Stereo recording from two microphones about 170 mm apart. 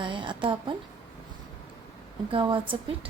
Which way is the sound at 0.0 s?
30° right (ahead or behind).